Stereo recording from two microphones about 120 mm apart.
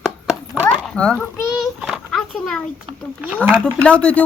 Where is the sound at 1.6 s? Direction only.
Centre (ahead or behind).